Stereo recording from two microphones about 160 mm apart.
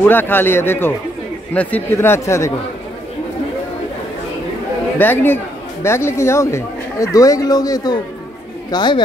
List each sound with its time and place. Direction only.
0.1 s speech: 15° left (ahead or behind)
4.9 s speech: 10° left (ahead or behind); by 9.0 s 30° left (ahead or behind)